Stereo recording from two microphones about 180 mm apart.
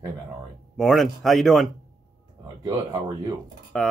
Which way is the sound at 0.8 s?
Centre (ahead or behind).